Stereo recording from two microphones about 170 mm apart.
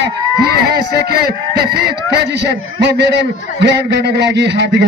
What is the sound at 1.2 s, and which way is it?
A man's voice, 65° right (ahead or behind).